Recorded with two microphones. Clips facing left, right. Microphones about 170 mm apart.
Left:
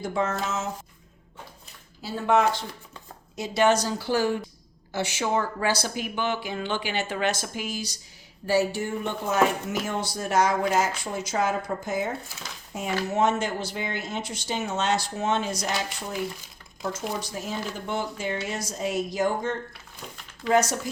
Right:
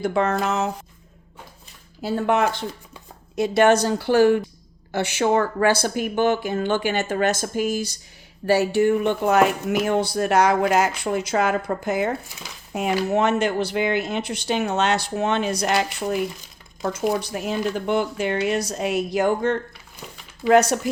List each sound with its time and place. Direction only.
0.0 s speech: 65° right (ahead or behind)
2.0 s speech: 55° right (ahead or behind)
8.4 s speech: 65° right (ahead or behind)